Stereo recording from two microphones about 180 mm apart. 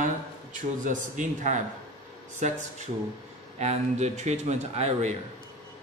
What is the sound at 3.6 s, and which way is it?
A man's voice, 40° right (ahead or behind).